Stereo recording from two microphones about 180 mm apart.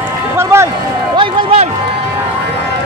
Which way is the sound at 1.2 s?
30° right (ahead or behind).